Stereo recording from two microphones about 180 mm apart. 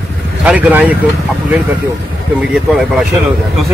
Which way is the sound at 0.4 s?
10° right (ahead or behind).